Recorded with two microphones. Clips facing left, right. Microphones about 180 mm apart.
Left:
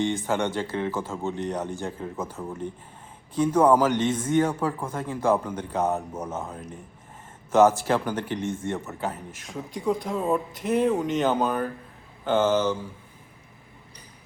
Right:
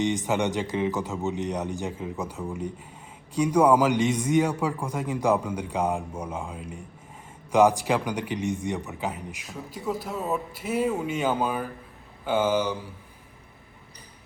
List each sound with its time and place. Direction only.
0.0 s a man's voice: 15° right (ahead or behind)
9.5 s a man's voice: 5° right (ahead or behind)